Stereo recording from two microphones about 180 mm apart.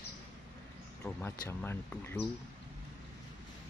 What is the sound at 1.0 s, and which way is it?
Speech, 10° left (ahead or behind).